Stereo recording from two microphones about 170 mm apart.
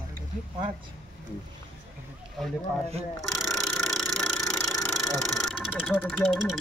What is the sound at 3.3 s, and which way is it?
Speech, centre (ahead or behind).